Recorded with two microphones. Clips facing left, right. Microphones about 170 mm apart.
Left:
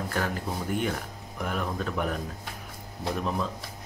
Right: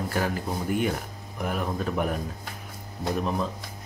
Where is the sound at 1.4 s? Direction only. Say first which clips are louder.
Right 2 dB; 10° right (ahead or behind).